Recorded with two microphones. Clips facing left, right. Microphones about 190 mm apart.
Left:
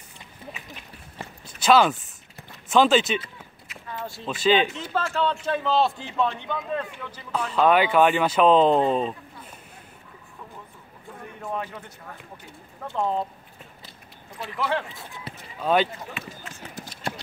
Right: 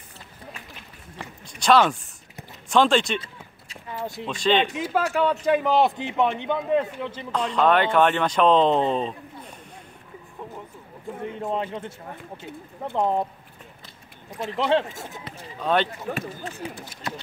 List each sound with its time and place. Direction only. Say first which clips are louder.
1.6 s speech: even; 5° left (ahead or behind)
3.2 s a sound: left 1 dB; 30° right (ahead or behind)
4.3 s speech: left 1 dB; 5° left (ahead or behind)
4.7 s a man's voice: right 3 dB; 10° right (ahead or behind)
7.5 s speech: left 1 dB; 5° left (ahead or behind)
11.2 s a man's voice: right 4 dB; 20° right (ahead or behind)
14.6 s a man's voice: right 5 dB; 25° right (ahead or behind)
14.9 s speech: right 4 dB; 45° right (ahead or behind)
15.6 s speech: left 1 dB; 5° left (ahead or behind)
16.1 s speech: right 8 dB; 40° right (ahead or behind)